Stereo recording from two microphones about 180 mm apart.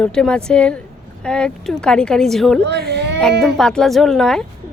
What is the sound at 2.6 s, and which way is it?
Speech, 65° right (ahead or behind).